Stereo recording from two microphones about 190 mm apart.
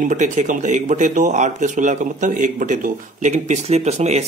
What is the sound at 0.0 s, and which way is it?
A man's voice, 40° right (ahead or behind).